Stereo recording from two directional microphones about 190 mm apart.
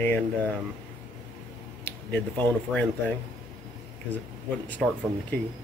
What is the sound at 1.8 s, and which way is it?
Speech, 10° left (ahead or behind).